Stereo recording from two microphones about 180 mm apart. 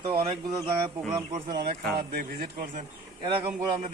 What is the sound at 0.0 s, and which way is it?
Speech, 30° right (ahead or behind).